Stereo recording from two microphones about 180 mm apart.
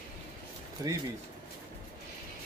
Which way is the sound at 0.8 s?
20° right (ahead or behind).